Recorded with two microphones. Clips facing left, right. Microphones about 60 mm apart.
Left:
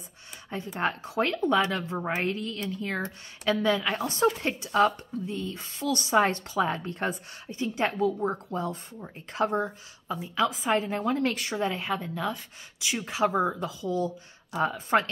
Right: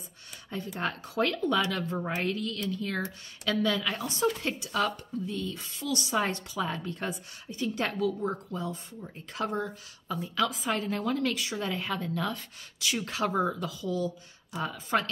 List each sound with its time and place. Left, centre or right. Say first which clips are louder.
0.5 s speech: left 3 dB; left
11.6 s a woman's voice: left 5 dB; left